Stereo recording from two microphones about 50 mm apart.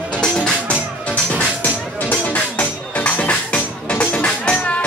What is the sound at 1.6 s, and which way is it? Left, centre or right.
Music, left.